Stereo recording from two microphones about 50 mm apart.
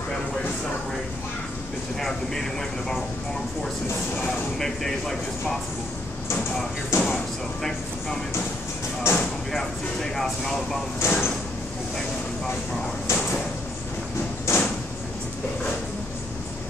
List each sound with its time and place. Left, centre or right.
2.0 s speech: centre
4.3 s speech: centre
6.9 s a sound: left
9.1 s speech: left
10.1 s speech: centre
11.0 s sliding door: left
13.0 s sliding door: left
14.5 s sliding door: left